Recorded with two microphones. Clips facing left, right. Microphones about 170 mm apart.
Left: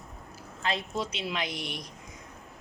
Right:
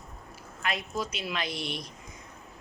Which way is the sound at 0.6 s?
25° left (ahead or behind).